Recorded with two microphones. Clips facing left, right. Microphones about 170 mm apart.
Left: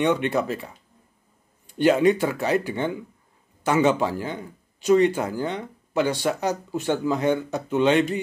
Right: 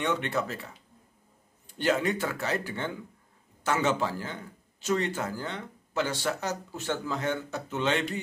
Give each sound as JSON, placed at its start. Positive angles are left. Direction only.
{"t": 0.0, "sound": "speech", "side_deg": 15}
{"t": 1.8, "sound": "speech", "side_deg": 15}